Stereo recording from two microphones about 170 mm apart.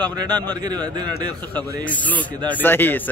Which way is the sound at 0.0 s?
25° right (ahead or behind).